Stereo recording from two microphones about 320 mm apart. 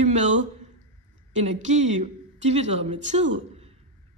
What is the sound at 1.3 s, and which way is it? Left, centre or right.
A woman's voice, right.